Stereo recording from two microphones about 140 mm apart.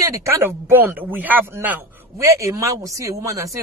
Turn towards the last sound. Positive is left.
turn(degrees=-20)  # may be behind; listen again after turning